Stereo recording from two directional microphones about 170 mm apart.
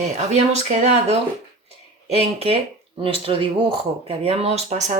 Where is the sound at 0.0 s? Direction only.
40° right (ahead or behind).